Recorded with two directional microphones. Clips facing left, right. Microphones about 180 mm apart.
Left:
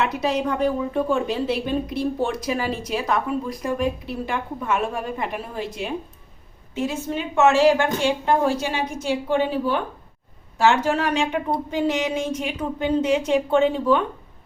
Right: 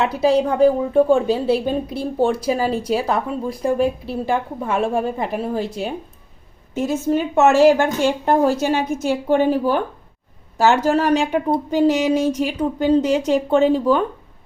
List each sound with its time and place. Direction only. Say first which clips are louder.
0.0 s a woman's voice: right 6 dB; 30° right (ahead or behind)
12.3 s speech: right 5 dB; centre (ahead or behind)
12.5 s a woman's voice: right 4 dB; 40° right (ahead or behind)